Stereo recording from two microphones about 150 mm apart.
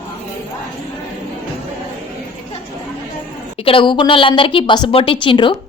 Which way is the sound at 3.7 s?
35° left (ahead or behind).